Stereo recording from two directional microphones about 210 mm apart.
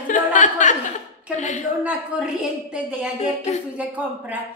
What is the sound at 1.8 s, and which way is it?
A woman's voice, 5° right (ahead or behind).